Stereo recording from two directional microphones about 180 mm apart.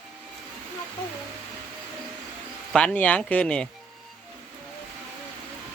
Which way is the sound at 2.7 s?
5° left (ahead or behind).